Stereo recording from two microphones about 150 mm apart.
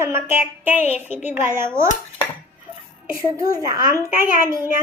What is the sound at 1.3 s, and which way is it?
Child singing, 15° right (ahead or behind).